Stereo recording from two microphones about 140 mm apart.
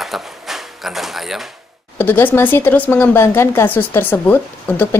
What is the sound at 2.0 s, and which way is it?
A woman's voice, 15° left (ahead or behind).